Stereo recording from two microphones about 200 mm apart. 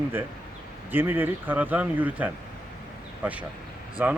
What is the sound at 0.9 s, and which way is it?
Speech, 10° right (ahead or behind).